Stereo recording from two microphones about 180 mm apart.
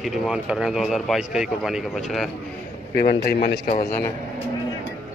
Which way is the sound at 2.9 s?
55° left (ahead or behind).